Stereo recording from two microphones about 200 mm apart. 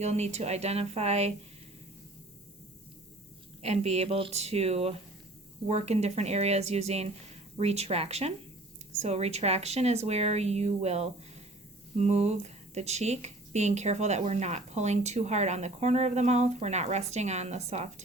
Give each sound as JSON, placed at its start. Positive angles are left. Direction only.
{"t": 0.0, "sound": "speech", "side_deg": -35}
{"t": 3.6, "sound": "speech", "side_deg": -30}